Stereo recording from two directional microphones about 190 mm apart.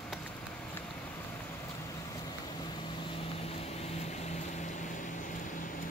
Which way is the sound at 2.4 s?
25° left (ahead or behind).